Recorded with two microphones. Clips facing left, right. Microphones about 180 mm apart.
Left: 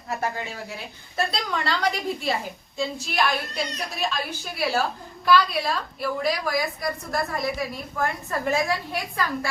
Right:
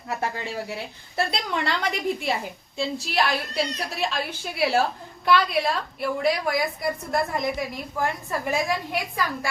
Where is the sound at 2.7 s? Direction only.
30° right (ahead or behind).